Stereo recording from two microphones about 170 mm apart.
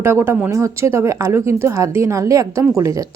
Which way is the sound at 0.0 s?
15° right (ahead or behind).